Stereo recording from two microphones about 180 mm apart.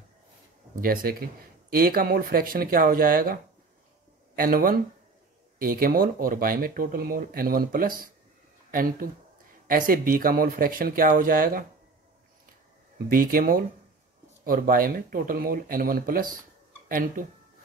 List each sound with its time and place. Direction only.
0.7 s speech: 55° right (ahead or behind)
4.4 s speech: 55° right (ahead or behind)
13.1 s speech: 50° right (ahead or behind)